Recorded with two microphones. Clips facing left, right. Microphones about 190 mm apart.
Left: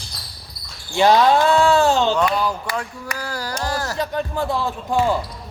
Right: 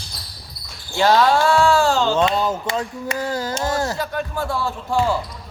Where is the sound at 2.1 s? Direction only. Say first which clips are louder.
Right 1 dB; 25° right (ahead or behind).